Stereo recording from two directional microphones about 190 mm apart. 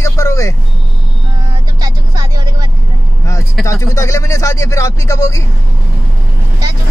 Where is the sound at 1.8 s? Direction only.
20° right (ahead or behind).